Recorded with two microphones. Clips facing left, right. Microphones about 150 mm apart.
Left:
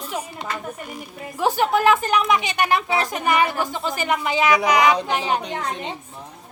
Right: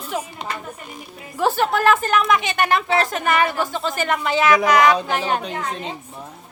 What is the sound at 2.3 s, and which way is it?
Speech, 50° right (ahead or behind).